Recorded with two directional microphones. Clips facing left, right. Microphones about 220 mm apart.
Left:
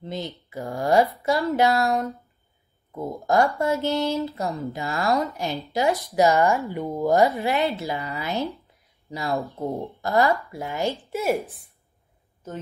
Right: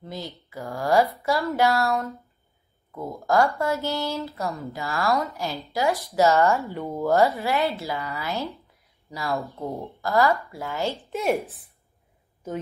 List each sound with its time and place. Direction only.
0.0 s speech: 20° left (ahead or behind)
3.2 s a woman's voice: 20° left (ahead or behind)
11.0 s speech: centre (ahead or behind)